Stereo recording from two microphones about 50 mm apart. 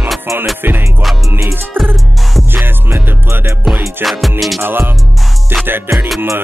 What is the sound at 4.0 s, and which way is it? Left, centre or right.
Music, centre.